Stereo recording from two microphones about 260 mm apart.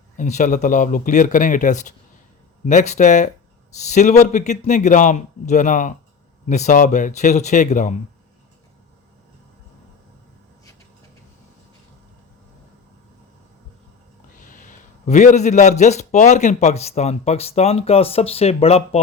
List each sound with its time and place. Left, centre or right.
0.2 s a man's voice: left
14.3 s a man's voice: left